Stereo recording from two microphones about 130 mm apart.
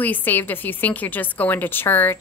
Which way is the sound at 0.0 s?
15° left (ahead or behind).